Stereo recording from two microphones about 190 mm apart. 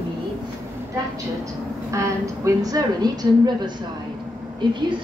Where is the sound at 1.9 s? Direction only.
15° right (ahead or behind).